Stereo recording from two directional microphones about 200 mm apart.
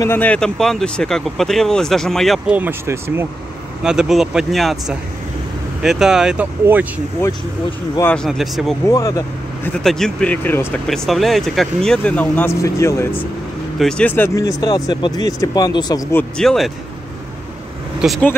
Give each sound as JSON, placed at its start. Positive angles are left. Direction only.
{"t": 0.0, "sound": "speech", "side_deg": 10}
{"t": 7.2, "sound": "speech", "side_deg": 10}
{"t": 8.8, "sound": "speech", "side_deg": 15}
{"t": 9.8, "sound": "speech", "side_deg": 0}
{"t": 18.0, "sound": "speech", "side_deg": 0}